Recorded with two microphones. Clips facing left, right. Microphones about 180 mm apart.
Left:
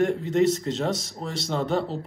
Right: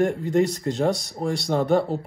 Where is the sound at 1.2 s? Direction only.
45° right (ahead or behind).